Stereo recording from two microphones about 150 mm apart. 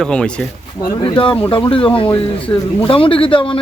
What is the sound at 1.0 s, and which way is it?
Speech, 35° left (ahead or behind).